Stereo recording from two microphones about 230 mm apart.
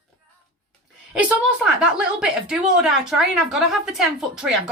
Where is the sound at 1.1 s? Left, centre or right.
Centre.